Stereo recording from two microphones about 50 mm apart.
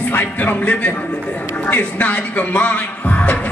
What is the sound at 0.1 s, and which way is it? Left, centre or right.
Music, left.